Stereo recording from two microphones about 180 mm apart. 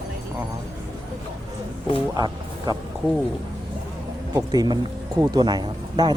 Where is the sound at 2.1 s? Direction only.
25° right (ahead or behind).